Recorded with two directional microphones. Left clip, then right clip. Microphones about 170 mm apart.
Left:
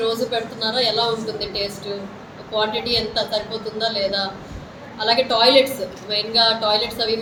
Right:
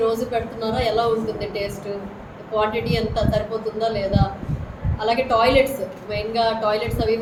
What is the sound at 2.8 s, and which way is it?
Speech, 35° right (ahead or behind).